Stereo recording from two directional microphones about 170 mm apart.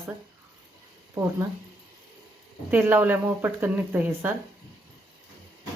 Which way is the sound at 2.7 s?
10° right (ahead or behind).